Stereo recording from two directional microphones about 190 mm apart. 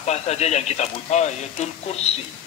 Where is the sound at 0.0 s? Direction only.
35° left (ahead or behind).